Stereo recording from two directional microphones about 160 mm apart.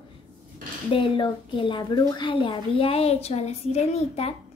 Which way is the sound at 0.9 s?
30° left (ahead or behind).